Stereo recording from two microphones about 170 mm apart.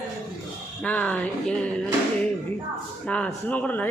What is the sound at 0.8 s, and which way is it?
Speech, 10° left (ahead or behind).